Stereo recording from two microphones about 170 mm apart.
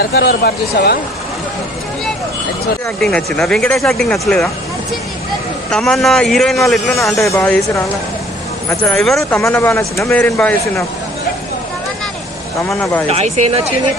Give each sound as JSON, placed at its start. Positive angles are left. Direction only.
{"t": 0.0, "sound": "speech", "side_deg": 65}
{"t": 3.0, "sound": "a man's voice", "side_deg": 5}
{"t": 5.7, "sound": "a man's voice", "side_deg": 0}
{"t": 7.3, "sound": "speech", "side_deg": 15}
{"t": 8.9, "sound": "a man's voice", "side_deg": 0}
{"t": 9.2, "sound": "speech", "side_deg": 15}
{"t": 12.6, "sound": "speech", "side_deg": 15}
{"t": 13.1, "sound": "speech", "side_deg": -40}